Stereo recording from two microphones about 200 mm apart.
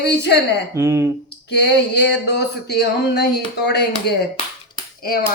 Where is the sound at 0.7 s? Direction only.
15° right (ahead or behind).